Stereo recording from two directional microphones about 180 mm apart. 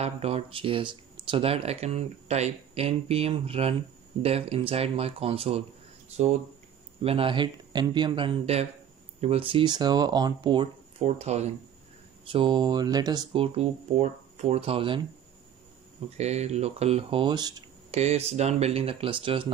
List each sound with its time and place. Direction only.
0.0 s speech: 35° right (ahead or behind)
16.2 s speech: 40° right (ahead or behind); by 17.6 s 20° right (ahead or behind)
17.9 s speech: 35° right (ahead or behind)